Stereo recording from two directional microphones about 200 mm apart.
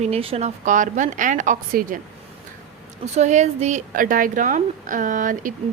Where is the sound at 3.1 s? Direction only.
35° right (ahead or behind).